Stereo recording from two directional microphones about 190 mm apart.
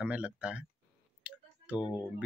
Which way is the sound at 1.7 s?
20° left (ahead or behind).